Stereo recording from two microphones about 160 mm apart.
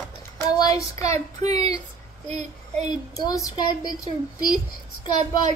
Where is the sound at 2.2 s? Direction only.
45° right (ahead or behind).